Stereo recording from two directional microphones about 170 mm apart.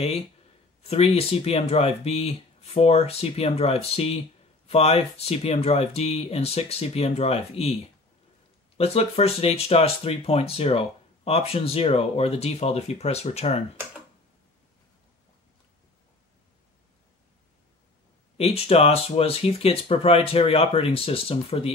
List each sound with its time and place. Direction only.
0.8 s speech: 35° left (ahead or behind)
8.7 s speech: 35° left (ahead or behind)
18.4 s speech: 35° left (ahead or behind)